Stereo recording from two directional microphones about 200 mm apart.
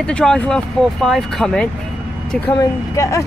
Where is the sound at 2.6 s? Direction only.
15° left (ahead or behind).